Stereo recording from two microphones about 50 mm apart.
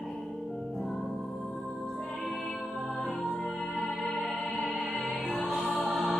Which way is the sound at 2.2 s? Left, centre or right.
Centre.